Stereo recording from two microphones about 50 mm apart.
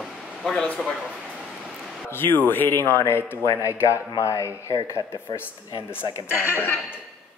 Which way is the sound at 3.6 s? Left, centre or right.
Left.